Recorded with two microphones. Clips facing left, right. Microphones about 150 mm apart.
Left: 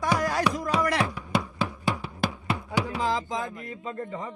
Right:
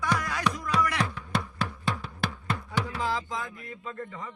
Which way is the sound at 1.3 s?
5° left (ahead or behind).